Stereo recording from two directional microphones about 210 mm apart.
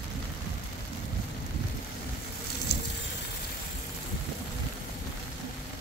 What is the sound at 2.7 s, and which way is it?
Vehicle, 50° left (ahead or behind).